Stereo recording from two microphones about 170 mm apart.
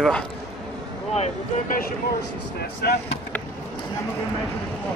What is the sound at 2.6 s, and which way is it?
Speech, 70° left (ahead or behind).